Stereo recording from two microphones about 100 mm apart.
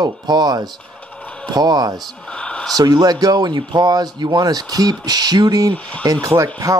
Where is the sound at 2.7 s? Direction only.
40° right (ahead or behind).